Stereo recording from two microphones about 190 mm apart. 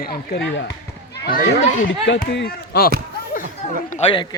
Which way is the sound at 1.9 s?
75° left (ahead or behind).